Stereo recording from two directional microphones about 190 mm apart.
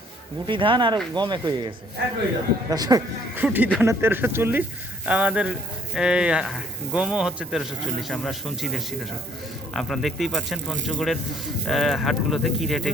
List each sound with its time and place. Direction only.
0.4 s speech: 25° right (ahead or behind)
3.4 s speech: 10° right (ahead or behind)